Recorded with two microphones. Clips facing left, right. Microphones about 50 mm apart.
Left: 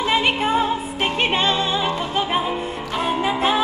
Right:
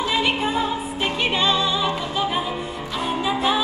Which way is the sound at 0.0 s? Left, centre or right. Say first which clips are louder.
Left 2 dB; left.